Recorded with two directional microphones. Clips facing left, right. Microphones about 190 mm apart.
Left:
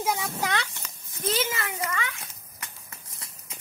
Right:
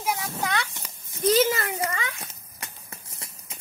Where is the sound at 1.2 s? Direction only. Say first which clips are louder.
Right 7 dB; 40° right (ahead or behind).